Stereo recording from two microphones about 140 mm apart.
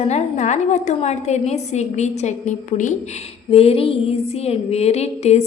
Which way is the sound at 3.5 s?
45° left (ahead or behind).